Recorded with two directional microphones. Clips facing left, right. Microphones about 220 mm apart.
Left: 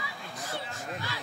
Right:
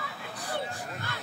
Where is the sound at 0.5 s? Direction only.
55° right (ahead or behind).